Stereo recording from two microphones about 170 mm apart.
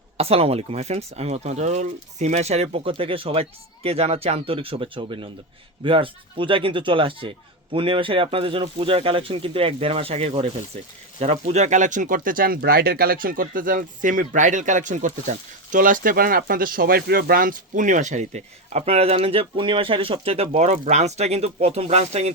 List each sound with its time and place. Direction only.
0.2 s speech: 35° right (ahead or behind)